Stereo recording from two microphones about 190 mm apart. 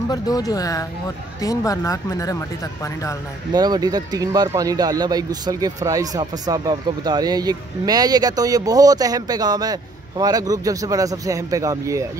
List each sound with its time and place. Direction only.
0.1 s speech: 20° left (ahead or behind)
3.5 s speech: 20° right (ahead or behind)